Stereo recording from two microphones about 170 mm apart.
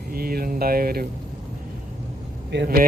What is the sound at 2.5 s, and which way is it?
Speech, 90° right.